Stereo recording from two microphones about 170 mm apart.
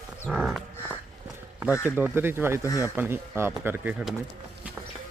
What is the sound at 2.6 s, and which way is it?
Speech, 20° left (ahead or behind).